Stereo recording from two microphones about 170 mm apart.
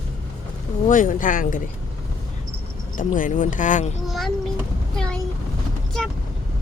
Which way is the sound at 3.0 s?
50° left (ahead or behind).